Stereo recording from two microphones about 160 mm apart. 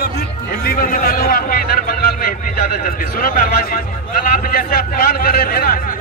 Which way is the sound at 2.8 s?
65° left (ahead or behind).